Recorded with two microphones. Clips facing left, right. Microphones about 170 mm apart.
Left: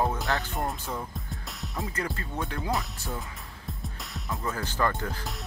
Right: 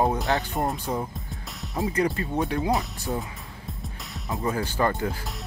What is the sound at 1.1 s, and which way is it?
Music, centre (ahead or behind).